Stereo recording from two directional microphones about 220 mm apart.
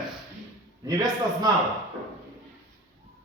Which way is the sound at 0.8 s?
15° right (ahead or behind).